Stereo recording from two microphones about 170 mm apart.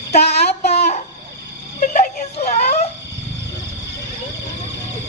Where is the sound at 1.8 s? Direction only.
50° left (ahead or behind).